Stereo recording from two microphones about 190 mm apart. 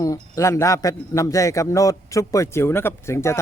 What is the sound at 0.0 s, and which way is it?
A man's voice, 15° left (ahead or behind).